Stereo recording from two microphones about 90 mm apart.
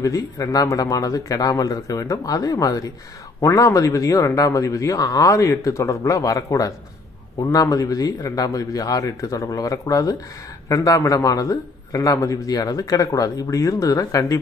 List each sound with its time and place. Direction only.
0.0 s a man's voice: 40° left (ahead or behind)